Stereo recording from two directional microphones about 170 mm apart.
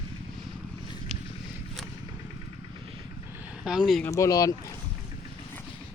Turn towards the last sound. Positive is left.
turn(degrees=20)  # may be behind; listen again after turning